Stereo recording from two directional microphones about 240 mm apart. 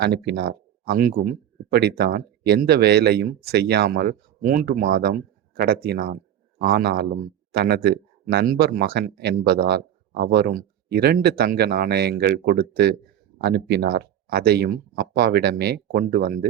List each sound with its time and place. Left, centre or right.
0.0 s speech: right